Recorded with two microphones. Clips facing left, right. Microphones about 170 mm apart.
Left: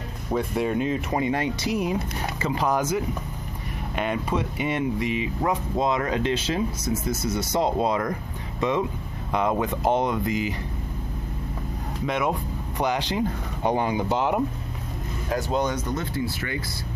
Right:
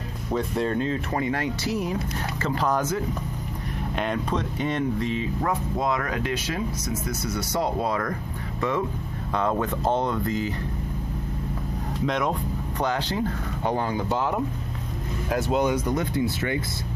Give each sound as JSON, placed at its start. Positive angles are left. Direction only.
{"t": 0.3, "sound": "speech", "side_deg": 10}
{"t": 12.1, "sound": "speech", "side_deg": 5}
{"t": 15.2, "sound": "speech", "side_deg": -5}